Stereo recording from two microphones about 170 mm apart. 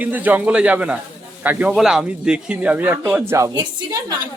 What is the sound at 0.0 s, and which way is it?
Speech, 10° right (ahead or behind).